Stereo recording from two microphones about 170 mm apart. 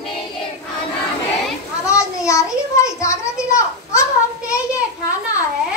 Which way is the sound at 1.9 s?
20° left (ahead or behind).